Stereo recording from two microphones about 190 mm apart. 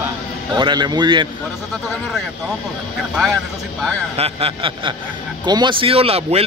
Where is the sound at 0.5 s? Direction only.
25° right (ahead or behind).